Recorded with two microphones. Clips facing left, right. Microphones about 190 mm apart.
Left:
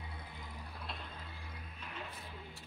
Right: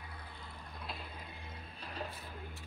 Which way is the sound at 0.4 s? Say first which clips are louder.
Left 2 dB; 15° left (ahead or behind).